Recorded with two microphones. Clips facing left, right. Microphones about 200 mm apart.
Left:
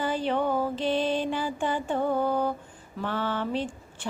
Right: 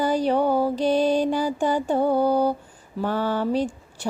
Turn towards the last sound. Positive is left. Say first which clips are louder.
# right 6 dB
turn(degrees=-40)  # may be behind; listen again after turning